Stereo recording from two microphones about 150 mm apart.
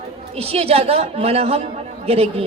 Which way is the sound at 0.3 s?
40° right (ahead or behind).